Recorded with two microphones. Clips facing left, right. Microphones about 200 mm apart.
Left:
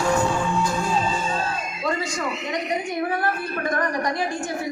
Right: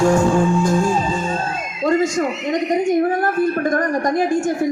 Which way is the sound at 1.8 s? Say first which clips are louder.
Right 10 dB; 45° right (ahead or behind).